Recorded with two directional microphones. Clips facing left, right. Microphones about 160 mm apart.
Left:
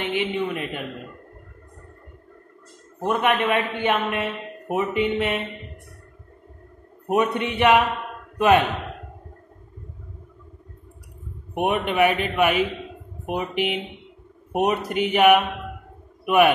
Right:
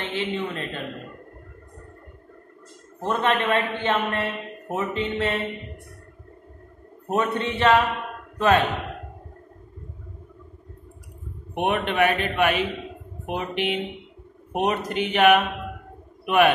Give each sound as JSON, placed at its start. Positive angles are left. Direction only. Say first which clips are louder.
{"t": 0.0, "sound": "a woman's voice", "louder": "left 3 dB", "side_deg": 15}
{"t": 3.0, "sound": "a man's voice", "louder": "left 2 dB", "side_deg": 15}
{"t": 7.1, "sound": "a man's voice", "louder": "left 2 dB", "side_deg": 15}
{"t": 11.5, "sound": "a man's voice", "louder": "left 1 dB", "side_deg": 5}